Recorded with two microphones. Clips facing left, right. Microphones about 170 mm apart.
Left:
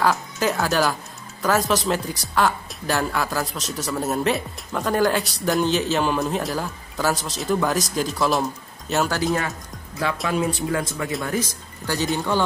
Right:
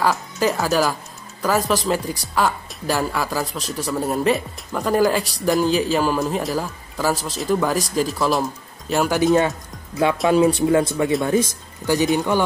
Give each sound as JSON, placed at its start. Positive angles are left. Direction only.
{"t": 0.0, "sound": "speech", "side_deg": 0}
{"t": 9.1, "sound": "speech", "side_deg": -20}